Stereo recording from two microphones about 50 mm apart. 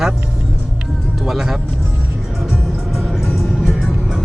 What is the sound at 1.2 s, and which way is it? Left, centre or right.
Music, centre.